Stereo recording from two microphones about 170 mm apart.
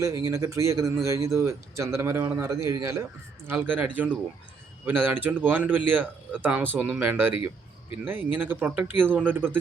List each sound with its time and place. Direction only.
0.0 s speech: 15° right (ahead or behind)